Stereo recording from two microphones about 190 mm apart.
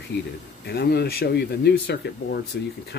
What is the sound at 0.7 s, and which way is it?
Speech, 55° left (ahead or behind).